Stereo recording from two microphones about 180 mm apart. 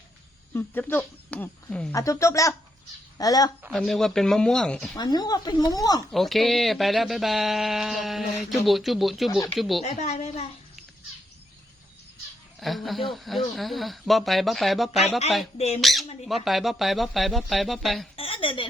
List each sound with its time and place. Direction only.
0.5 s speech: 10° left (ahead or behind)
1.9 s speech: 15° left (ahead or behind)
3.7 s speech: centre (ahead or behind)
4.9 s speech: 20° left (ahead or behind)
6.1 s speech: centre (ahead or behind)
9.8 s a woman's voice: 40° left (ahead or behind)
12.5 s speech: centre (ahead or behind)
15.5 s a woman's voice: 35° left (ahead or behind)
15.8 s speech: centre (ahead or behind)
18.2 s a sound: 30° left (ahead or behind)